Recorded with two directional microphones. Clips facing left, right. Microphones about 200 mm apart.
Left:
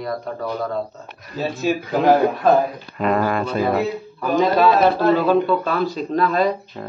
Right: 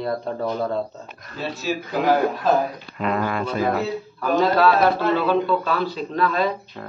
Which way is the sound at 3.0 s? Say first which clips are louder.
Left 4 dB; 45° left (ahead or behind).